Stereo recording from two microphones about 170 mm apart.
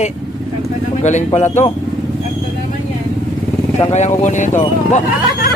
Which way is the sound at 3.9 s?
40° left (ahead or behind).